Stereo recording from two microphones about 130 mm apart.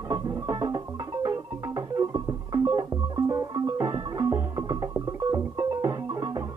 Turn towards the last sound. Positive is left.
turn(degrees=-30)  # may be behind; listen again after turning